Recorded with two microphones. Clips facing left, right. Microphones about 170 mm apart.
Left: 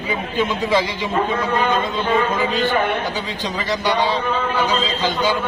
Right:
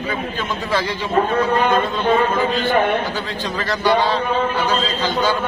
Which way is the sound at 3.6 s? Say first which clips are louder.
Right 3 dB; 15° left (ahead or behind).